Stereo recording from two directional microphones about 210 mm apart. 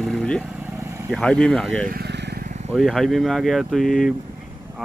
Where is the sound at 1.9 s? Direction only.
50° right (ahead or behind).